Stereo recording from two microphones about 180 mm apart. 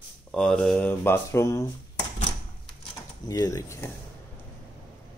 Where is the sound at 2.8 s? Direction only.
20° left (ahead or behind).